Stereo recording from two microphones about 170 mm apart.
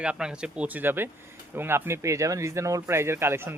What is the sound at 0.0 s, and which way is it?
Speech, 5° right (ahead or behind).